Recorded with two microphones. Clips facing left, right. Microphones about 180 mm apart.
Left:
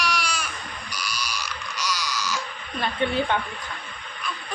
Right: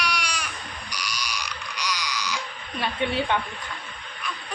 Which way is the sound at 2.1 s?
15° right (ahead or behind).